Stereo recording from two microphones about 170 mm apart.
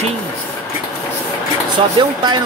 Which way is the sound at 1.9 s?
25° right (ahead or behind).